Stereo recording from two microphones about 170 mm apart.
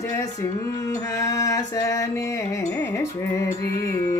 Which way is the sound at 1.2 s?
20° left (ahead or behind).